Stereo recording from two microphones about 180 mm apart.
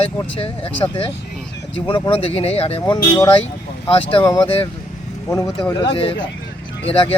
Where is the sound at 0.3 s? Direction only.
30° left (ahead or behind).